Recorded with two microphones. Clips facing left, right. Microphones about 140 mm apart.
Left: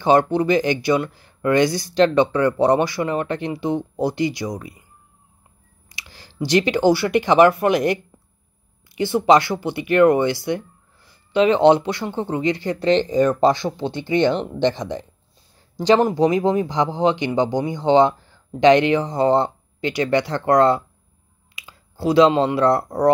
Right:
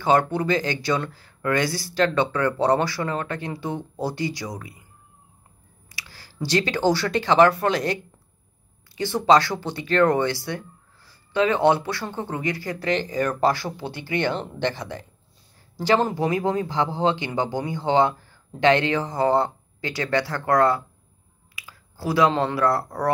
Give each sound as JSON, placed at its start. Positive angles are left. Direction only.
{"t": 0.0, "sound": "speech", "side_deg": 20}
{"t": 5.9, "sound": "speech", "side_deg": 20}